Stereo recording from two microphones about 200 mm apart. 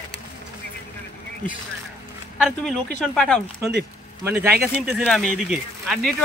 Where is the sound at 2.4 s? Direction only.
5° left (ahead or behind).